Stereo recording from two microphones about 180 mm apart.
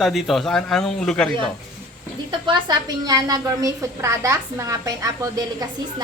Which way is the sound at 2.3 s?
25° right (ahead or behind).